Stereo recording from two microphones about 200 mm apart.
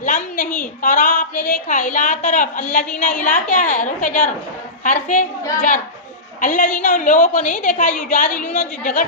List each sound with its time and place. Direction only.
0.0 s a woman's voice: 40° left (ahead or behind)
6.4 s a woman's voice: 40° left (ahead or behind)